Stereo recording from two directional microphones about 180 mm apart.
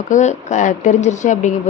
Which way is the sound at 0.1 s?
40° left (ahead or behind).